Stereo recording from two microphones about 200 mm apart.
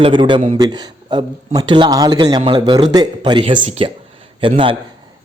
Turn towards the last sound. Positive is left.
turn(degrees=-25)  # may be behind; listen again after turning